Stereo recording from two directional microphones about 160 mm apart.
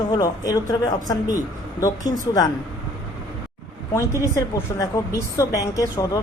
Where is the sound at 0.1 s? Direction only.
25° left (ahead or behind).